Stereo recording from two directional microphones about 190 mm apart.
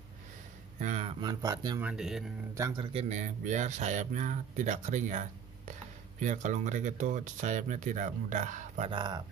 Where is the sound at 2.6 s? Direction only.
20° right (ahead or behind); by 8.9 s 40° right (ahead or behind).